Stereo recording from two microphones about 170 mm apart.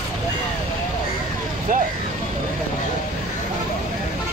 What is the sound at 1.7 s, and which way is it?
Vehicle, 50° right (ahead or behind).